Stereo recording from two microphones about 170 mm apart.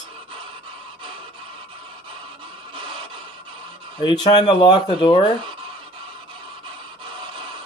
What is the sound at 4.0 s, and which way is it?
Speech, 25° left (ahead or behind).